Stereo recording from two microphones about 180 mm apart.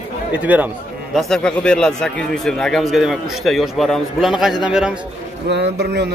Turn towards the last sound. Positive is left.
turn(degrees=-65)  # may be behind; listen again after turning